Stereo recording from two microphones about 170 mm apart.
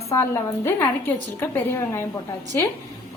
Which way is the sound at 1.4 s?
15° left (ahead or behind).